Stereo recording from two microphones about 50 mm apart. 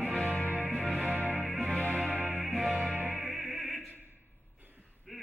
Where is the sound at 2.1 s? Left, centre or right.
Right.